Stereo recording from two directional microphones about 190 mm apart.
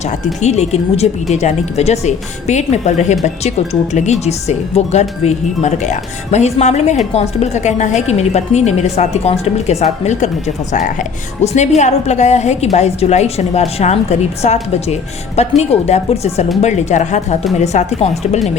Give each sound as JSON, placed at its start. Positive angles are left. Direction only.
{"t": 0.4, "sound": "speech", "side_deg": 35}